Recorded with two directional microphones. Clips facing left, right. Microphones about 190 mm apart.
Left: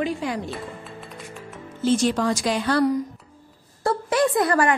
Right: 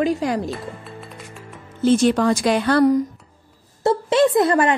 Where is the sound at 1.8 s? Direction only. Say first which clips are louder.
Right 5 dB; 60° right (ahead or behind).